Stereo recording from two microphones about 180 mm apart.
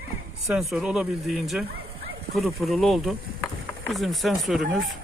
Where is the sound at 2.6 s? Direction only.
Centre (ahead or behind).